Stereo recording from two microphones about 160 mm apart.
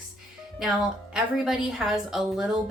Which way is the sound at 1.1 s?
5° right (ahead or behind).